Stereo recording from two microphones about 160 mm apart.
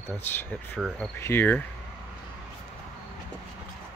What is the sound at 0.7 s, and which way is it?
Speech, centre (ahead or behind).